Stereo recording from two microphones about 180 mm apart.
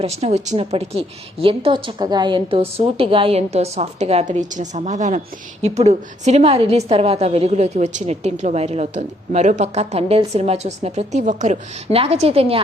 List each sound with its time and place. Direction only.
0.0 s a woman's voice: 35° right (ahead or behind)